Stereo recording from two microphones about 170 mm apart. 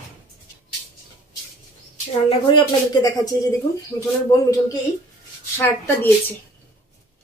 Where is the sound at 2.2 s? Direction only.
25° left (ahead or behind).